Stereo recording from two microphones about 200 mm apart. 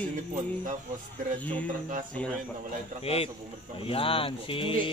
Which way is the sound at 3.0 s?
30° left (ahead or behind).